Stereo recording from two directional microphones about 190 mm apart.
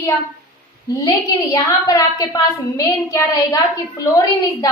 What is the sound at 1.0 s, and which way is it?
A woman's voice, 20° left (ahead or behind).